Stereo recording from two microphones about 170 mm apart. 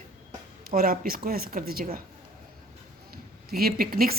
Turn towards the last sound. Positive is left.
turn(degrees=-60)  # may be behind; listen again after turning